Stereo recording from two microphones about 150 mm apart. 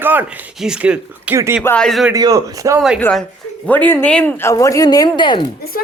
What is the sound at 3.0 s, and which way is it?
A man's voice, 5° left (ahead or behind).